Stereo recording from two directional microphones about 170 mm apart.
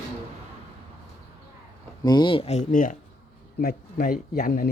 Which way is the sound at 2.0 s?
25° left (ahead or behind).